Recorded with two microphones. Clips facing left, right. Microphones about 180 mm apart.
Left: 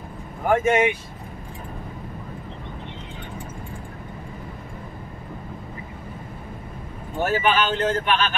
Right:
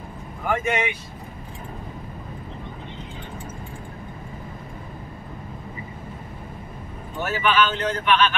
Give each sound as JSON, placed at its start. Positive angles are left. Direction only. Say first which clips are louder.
{"t": 0.5, "sound": "speech", "louder": "left 5 dB", "side_deg": 45}
{"t": 7.2, "sound": "speech", "louder": "left 1 dB", "side_deg": 45}